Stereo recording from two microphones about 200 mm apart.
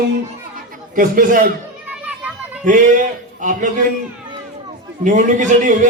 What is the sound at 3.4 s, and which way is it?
Speech, 40° right (ahead or behind).